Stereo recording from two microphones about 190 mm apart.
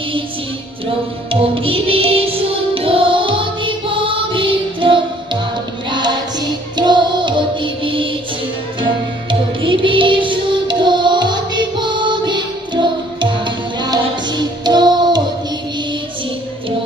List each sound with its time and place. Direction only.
1.3 s music: 30° right (ahead or behind)
9.6 s music: 25° right (ahead or behind)